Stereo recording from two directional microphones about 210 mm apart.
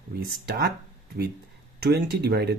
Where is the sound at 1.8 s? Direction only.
50° right (ahead or behind).